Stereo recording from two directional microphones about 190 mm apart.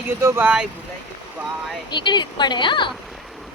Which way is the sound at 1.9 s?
25° left (ahead or behind).